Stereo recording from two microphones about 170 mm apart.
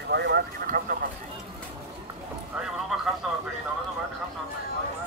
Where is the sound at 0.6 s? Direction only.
55° right (ahead or behind).